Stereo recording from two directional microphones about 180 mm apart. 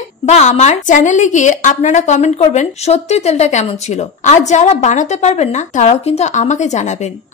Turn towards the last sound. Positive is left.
turn(degrees=40)  # may be behind; listen again after turning